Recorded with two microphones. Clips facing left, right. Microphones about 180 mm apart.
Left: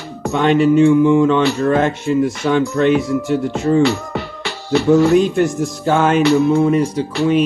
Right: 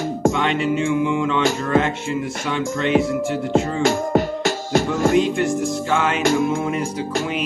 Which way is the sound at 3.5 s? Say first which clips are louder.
Left 3 dB; 45° right (ahead or behind).